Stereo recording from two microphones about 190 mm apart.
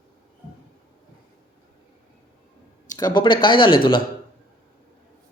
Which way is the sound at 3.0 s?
25° left (ahead or behind).